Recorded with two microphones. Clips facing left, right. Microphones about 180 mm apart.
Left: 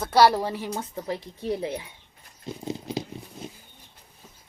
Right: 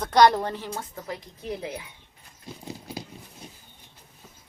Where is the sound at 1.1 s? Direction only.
30° left (ahead or behind).